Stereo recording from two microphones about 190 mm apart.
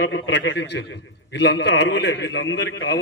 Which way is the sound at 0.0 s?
65° left (ahead or behind).